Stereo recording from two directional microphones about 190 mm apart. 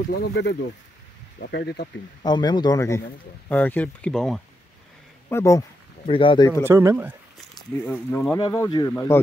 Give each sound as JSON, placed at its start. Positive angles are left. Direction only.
{"t": 0.2, "sound": "speech", "side_deg": 65}
{"t": 2.2, "sound": "a man's voice", "side_deg": 20}
{"t": 5.3, "sound": "speech", "side_deg": 15}
{"t": 6.0, "sound": "a man's voice", "side_deg": 25}
{"t": 6.6, "sound": "speech", "side_deg": -15}
{"t": 7.8, "sound": "speech", "side_deg": 5}
{"t": 8.4, "sound": "a man's voice", "side_deg": 20}